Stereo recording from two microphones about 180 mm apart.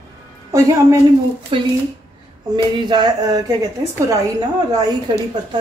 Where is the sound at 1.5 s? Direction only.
30° right (ahead or behind).